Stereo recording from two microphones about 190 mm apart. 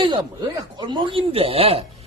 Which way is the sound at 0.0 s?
25° right (ahead or behind).